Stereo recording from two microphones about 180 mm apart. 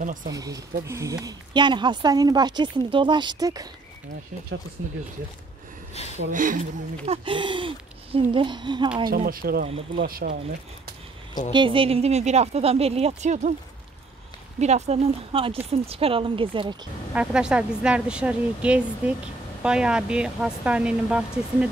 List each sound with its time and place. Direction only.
0.3 s a woman's voice: 20° right (ahead or behind)
4.8 s speech: 65° right (ahead or behind)
6.0 s speech: 35° left (ahead or behind)
6.3 s a woman's voice: 45° right (ahead or behind); by 8.8 s 25° right (ahead or behind)
9.1 s speech: 50° right (ahead or behind)
9.7 s speech: 35° right (ahead or behind)
10.0 s speech: 55° right (ahead or behind)
11.5 s speech: 30° right (ahead or behind)
14.6 s a woman's voice: 40° right (ahead or behind)
17.1 s speech: 5° right (ahead or behind)